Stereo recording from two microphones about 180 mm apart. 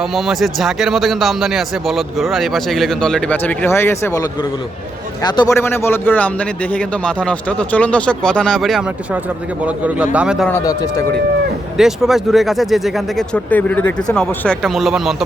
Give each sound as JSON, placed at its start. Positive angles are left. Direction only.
{"t": 0.0, "sound": "a man's voice", "side_deg": 0}
{"t": 10.5, "sound": "speech", "side_deg": 20}
{"t": 11.8, "sound": "a man's voice", "side_deg": 0}